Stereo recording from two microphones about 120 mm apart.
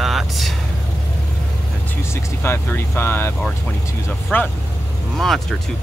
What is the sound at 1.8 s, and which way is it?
Speech, 20° left (ahead or behind).